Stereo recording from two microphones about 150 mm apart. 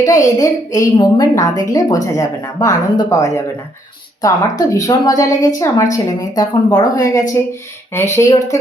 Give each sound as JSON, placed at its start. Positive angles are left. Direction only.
{"t": 0.0, "sound": "a woman's voice", "side_deg": 20}